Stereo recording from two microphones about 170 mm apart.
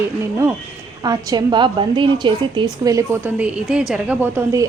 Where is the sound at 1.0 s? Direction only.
25° right (ahead or behind).